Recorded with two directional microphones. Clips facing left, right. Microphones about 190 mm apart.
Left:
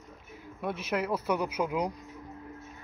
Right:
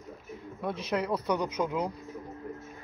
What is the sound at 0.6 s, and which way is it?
Speech, 5° left (ahead or behind).